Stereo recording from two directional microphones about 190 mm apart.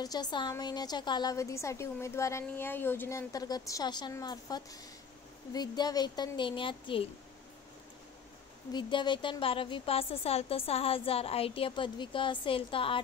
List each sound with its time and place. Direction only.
0.0 s a woman's voice: 20° left (ahead or behind)
8.7 s a woman's voice: 25° left (ahead or behind)